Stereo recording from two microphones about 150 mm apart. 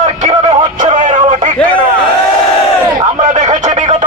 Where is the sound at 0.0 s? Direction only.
50° right (ahead or behind).